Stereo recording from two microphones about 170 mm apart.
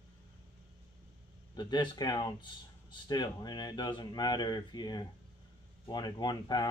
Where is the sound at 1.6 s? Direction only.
25° left (ahead or behind).